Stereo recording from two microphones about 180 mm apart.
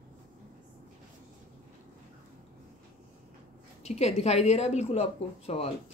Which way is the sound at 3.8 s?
35° left (ahead or behind).